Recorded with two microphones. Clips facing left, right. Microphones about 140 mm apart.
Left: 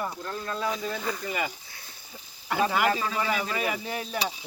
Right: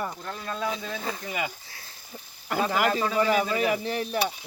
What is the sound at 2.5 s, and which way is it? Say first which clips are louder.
Speech: even; 50° right (ahead or behind).